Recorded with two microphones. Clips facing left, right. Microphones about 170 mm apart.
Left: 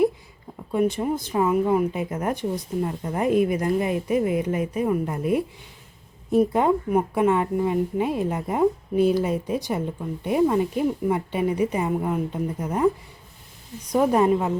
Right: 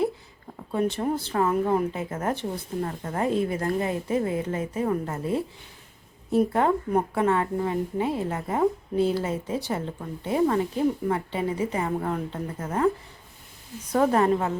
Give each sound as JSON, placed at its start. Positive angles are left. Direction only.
{"t": 0.7, "sound": "a woman's voice", "side_deg": 10}
{"t": 13.9, "sound": "a woman's voice", "side_deg": 15}